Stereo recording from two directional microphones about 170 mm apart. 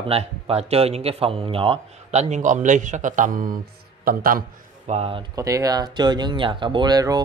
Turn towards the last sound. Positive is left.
turn(degrees=-25)  # may be behind; listen again after turning